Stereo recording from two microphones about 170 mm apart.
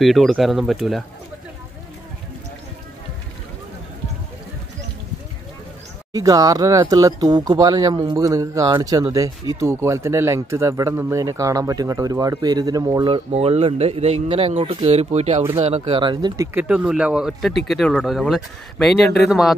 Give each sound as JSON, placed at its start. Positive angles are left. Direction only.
{"t": 0.0, "sound": "speech", "side_deg": 0}
{"t": 6.1, "sound": "speech", "side_deg": -20}
{"t": 13.1, "sound": "a man's voice", "side_deg": -35}
{"t": 16.5, "sound": "speech", "side_deg": -5}